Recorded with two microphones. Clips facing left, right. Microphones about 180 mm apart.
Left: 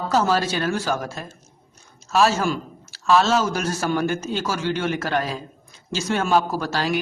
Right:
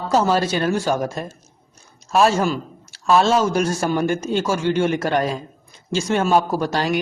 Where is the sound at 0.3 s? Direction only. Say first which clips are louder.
Right 3 dB; 45° right (ahead or behind).